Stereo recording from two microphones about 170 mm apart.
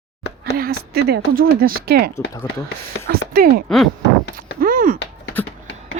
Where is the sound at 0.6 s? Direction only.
65° right (ahead or behind).